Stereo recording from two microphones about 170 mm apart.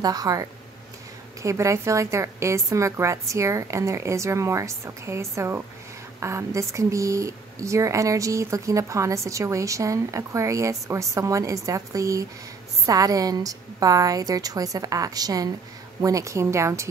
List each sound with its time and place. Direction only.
0.0 s a woman's voice: 20° right (ahead or behind)